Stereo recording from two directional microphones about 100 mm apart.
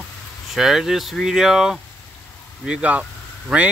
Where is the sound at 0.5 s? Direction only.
5° right (ahead or behind).